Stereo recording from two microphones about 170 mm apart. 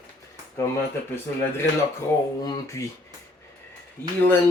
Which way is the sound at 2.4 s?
20° left (ahead or behind).